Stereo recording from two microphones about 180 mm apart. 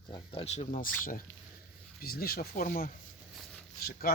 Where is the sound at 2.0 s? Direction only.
55° left (ahead or behind).